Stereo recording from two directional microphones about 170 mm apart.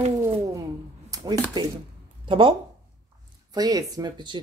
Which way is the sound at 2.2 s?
30° right (ahead or behind).